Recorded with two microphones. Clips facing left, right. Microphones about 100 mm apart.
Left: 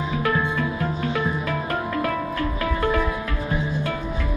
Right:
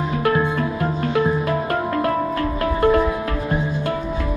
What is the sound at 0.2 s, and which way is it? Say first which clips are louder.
Music: right 4 dB; 40° right (ahead or behind).